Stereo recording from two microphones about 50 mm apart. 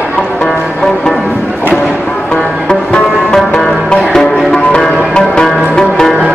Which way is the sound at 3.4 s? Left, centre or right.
Centre.